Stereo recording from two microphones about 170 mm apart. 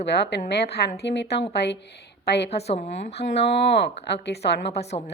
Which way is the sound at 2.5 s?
35° left (ahead or behind).